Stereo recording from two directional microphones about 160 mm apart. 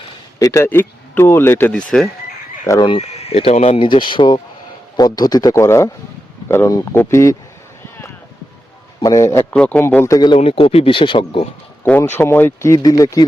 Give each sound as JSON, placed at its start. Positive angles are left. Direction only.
{"t": 0.3, "sound": "speech", "side_deg": 20}
{"t": 2.8, "sound": "speech", "side_deg": 35}
{"t": 9.0, "sound": "speech", "side_deg": 20}
{"t": 10.2, "sound": "speech", "side_deg": 30}
{"t": 12.1, "sound": "speech", "side_deg": 15}